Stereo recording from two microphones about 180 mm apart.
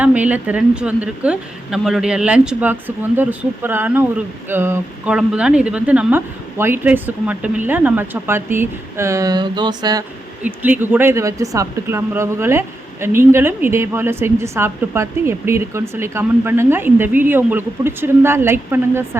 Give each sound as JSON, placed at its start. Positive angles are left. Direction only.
{"t": 0.0, "sound": "speech", "side_deg": -10}
{"t": 10.4, "sound": "speech", "side_deg": -10}